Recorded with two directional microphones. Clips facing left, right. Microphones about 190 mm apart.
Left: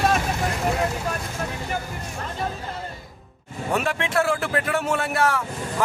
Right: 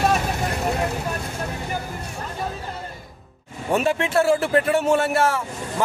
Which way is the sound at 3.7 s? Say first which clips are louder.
Right 4 dB; 30° right (ahead or behind).